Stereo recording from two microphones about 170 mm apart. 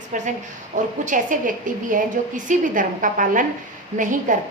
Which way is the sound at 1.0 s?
50° right (ahead or behind).